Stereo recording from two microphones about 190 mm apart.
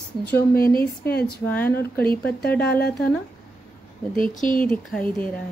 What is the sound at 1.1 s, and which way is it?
Speech, 55° left (ahead or behind).